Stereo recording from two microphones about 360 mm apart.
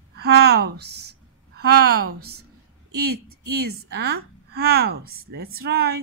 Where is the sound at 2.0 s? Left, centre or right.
Right.